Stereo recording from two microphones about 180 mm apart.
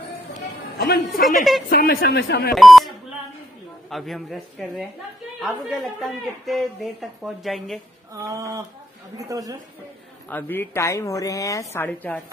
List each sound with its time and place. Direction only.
0.7 s a woman's voice: 60° left (ahead or behind)
1.2 s speech: centre (ahead or behind)
1.7 s speech: 60° left (ahead or behind)
2.5 s speech: centre (ahead or behind)
3.9 s speech: centre (ahead or behind)
8.1 s a sound: 15° right (ahead or behind)
9.1 s a woman's voice: 20° right (ahead or behind)
10.3 s a woman's voice: 10° left (ahead or behind)